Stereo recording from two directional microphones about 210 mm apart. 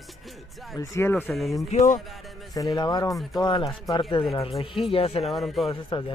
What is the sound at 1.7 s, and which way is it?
Speech, 40° left (ahead or behind).